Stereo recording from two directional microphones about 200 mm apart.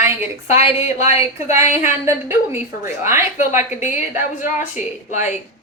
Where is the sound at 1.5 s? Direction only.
10° right (ahead or behind).